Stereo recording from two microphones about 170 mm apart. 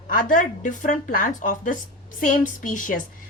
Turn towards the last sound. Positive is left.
turn(degrees=50)  # may be behind; listen again after turning